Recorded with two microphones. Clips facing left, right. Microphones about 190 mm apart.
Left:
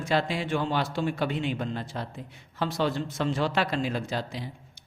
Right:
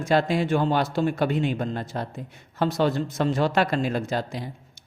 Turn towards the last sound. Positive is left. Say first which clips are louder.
# right 4 dB
turn(degrees=-45)  # may be behind; listen again after turning